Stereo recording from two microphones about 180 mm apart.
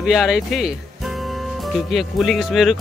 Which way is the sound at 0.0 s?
Centre (ahead or behind).